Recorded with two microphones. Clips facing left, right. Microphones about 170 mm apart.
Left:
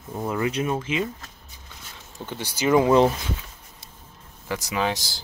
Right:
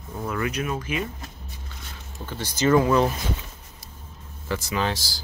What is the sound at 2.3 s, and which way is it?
Speech, 10° left (ahead or behind).